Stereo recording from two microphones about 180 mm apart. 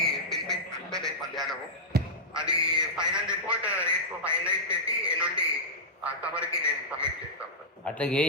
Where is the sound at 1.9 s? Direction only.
60° right (ahead or behind).